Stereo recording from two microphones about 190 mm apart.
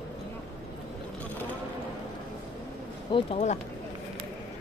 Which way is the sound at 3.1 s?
25° left (ahead or behind).